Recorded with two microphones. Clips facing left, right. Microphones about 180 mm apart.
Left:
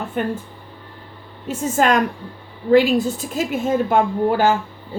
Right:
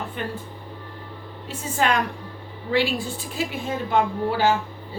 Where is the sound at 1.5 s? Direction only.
45° left (ahead or behind).